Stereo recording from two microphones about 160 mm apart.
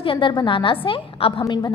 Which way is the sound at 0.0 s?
30° left (ahead or behind).